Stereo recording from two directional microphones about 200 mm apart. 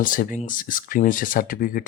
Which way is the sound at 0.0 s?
45° left (ahead or behind).